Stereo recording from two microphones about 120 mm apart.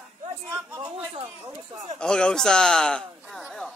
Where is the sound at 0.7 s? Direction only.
40° right (ahead or behind).